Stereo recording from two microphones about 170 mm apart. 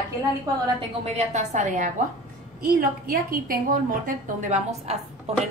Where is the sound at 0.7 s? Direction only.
40° right (ahead or behind).